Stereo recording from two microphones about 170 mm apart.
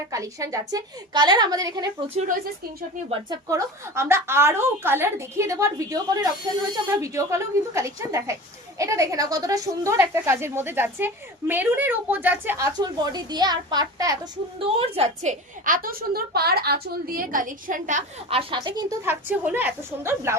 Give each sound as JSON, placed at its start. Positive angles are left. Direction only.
{"t": 0.1, "sound": "a woman's voice", "side_deg": -20}
{"t": 2.1, "sound": "a woman's voice", "side_deg": -50}
{"t": 3.1, "sound": "a woman's voice", "side_deg": -25}
{"t": 14.8, "sound": "a woman's voice", "side_deg": -40}
{"t": 19.0, "sound": "a woman's voice", "side_deg": -10}